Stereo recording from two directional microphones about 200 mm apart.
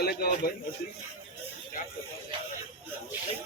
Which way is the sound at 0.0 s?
50° left (ahead or behind).